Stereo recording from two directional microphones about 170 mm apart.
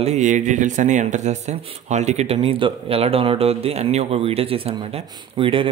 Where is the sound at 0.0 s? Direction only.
40° right (ahead or behind).